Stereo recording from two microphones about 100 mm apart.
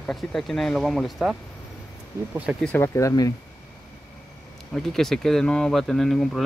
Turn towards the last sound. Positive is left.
turn(degrees=5)  # may be behind; listen again after turning